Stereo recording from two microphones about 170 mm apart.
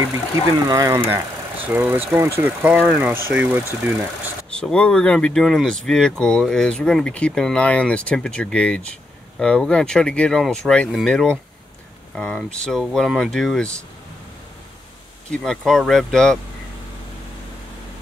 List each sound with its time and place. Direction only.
0.7 s speech: 20° right (ahead or behind)
4.5 s speech: 5° left (ahead or behind)
15.3 s speech: 5° left (ahead or behind)